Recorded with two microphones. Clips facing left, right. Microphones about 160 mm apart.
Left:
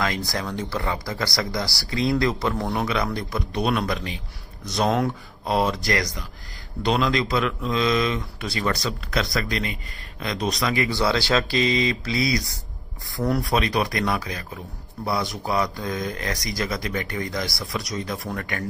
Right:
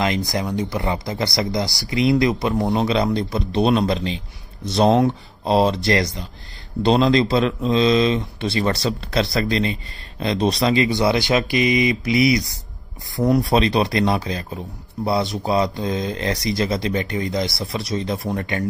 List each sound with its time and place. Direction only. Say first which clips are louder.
0.0 s speech: right 5 dB; 20° right (ahead or behind)